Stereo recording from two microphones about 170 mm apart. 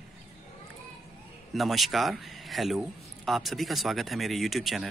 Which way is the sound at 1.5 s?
Centre (ahead or behind).